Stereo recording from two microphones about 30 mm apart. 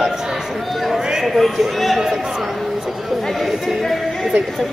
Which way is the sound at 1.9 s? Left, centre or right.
Centre.